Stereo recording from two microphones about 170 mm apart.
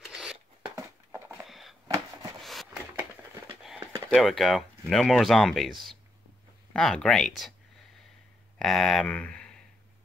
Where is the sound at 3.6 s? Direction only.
Centre (ahead or behind).